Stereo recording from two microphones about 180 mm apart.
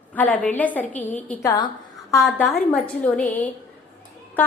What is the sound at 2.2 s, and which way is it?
A woman's voice, centre (ahead or behind).